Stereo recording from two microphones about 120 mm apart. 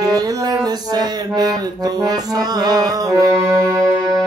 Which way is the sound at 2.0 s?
35° right (ahead or behind).